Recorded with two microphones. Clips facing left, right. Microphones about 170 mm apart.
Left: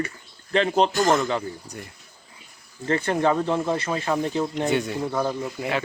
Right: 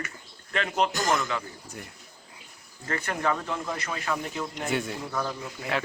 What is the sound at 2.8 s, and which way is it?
Speech, 30° left (ahead or behind).